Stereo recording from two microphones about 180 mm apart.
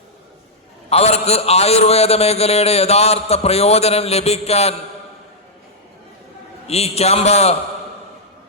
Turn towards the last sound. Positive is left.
turn(degrees=35)  # may be behind; listen again after turning